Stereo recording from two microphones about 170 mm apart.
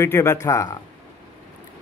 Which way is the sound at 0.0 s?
15° left (ahead or behind).